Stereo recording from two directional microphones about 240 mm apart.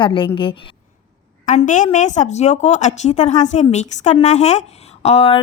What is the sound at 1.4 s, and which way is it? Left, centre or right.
A woman's voice, left.